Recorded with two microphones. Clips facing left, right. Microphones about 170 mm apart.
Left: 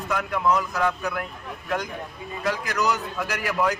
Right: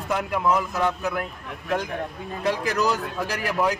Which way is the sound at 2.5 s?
30° right (ahead or behind).